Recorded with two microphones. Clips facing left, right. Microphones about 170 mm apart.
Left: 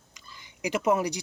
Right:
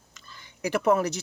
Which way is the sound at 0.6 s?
15° left (ahead or behind).